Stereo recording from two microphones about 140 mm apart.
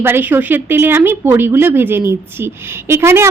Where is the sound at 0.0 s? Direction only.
15° right (ahead or behind).